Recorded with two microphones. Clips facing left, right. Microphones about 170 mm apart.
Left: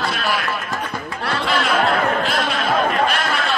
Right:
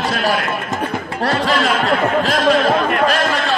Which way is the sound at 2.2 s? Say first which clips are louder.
Right 7 dB; 90° right.